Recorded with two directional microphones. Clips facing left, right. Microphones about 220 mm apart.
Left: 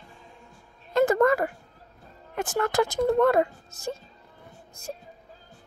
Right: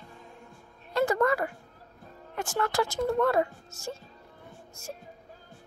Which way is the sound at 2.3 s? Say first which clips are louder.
Left 4 dB; 20° left (ahead or behind).